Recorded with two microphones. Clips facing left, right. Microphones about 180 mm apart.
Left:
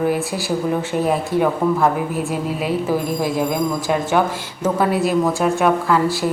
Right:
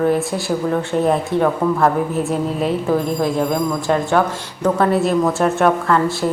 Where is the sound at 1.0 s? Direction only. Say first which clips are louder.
Right 1 dB; 5° left (ahead or behind).